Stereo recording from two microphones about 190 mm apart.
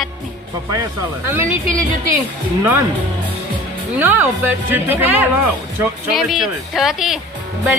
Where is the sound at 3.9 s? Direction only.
10° right (ahead or behind).